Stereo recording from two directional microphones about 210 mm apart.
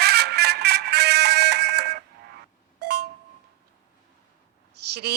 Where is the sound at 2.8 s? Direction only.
50° right (ahead or behind).